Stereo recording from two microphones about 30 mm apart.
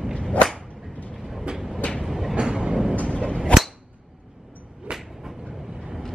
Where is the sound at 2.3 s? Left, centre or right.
Right.